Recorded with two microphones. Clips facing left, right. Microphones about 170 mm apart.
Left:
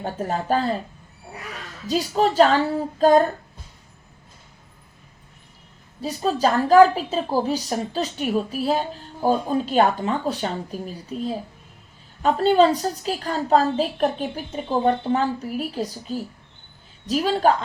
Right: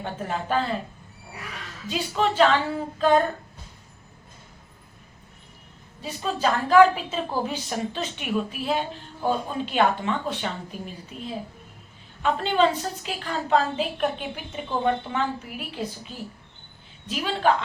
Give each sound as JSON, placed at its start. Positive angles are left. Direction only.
{"t": 0.0, "sound": "a woman's voice", "side_deg": 40}
{"t": 1.9, "sound": "a woman's voice", "side_deg": 40}
{"t": 6.0, "sound": "a woman's voice", "side_deg": 40}